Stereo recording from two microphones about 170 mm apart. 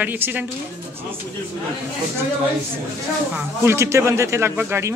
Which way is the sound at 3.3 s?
15° right (ahead or behind).